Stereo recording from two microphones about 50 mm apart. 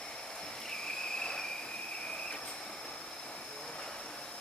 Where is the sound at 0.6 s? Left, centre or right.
Centre.